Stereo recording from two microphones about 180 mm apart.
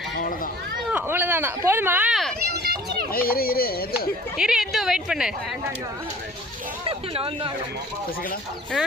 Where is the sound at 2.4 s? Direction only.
60° right (ahead or behind).